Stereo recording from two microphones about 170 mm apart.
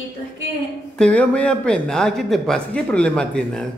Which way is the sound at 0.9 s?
5° left (ahead or behind).